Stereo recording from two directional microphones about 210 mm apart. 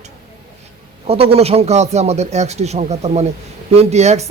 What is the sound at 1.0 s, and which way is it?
Speech, 30° right (ahead or behind).